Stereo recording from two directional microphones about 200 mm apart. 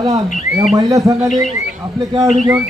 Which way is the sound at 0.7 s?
15° right (ahead or behind).